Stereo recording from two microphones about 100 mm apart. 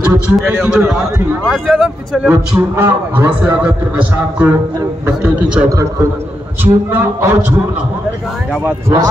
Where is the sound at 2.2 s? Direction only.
15° right (ahead or behind).